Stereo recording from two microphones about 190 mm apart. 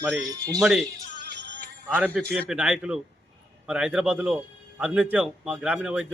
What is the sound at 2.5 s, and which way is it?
Speech, 5° right (ahead or behind).